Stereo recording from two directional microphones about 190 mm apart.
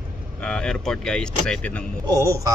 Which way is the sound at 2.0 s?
15° right (ahead or behind).